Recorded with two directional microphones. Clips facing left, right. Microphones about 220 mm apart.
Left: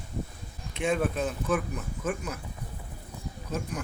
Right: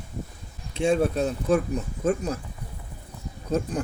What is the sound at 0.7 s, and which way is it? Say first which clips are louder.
Speech: right 5 dB; 30° right (ahead or behind).